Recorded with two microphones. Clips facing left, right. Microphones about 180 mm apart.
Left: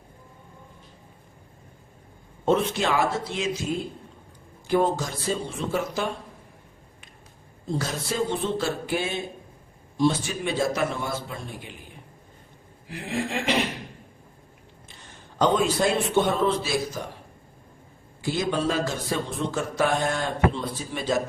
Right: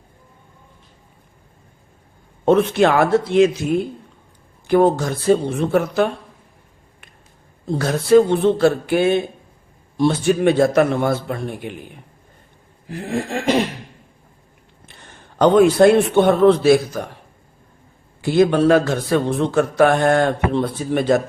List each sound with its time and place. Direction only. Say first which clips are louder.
2.4 s a man's voice: right 9 dB; 60° right (ahead or behind)
7.7 s a man's voice: right 15 dB; 60° right (ahead or behind)
12.9 s a sound: right 5 dB; 45° right (ahead or behind)
14.8 s a man's voice: right 5 dB; 60° right (ahead or behind)
18.2 s a man's voice: right 11 dB; 60° right (ahead or behind)